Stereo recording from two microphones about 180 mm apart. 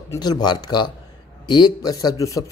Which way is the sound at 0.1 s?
20° left (ahead or behind).